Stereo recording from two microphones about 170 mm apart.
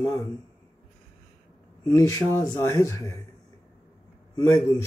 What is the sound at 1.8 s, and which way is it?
A man's voice, 20° left (ahead or behind).